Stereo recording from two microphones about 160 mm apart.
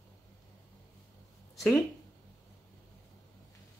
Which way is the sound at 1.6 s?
10° left (ahead or behind).